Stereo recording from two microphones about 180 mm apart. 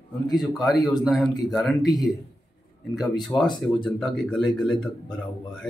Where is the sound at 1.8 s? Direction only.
20° left (ahead or behind).